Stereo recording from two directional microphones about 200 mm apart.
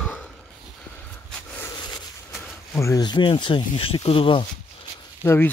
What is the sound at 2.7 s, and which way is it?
Speech, 15° left (ahead or behind).